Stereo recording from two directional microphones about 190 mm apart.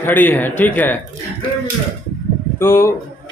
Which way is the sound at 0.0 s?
10° left (ahead or behind).